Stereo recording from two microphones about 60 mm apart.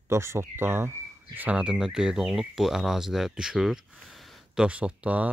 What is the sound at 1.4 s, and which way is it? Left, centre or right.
Speech, centre.